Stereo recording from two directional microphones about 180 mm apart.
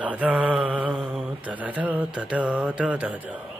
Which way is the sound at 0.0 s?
10° right (ahead or behind).